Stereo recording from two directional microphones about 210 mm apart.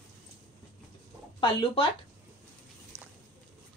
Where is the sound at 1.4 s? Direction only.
25° left (ahead or behind).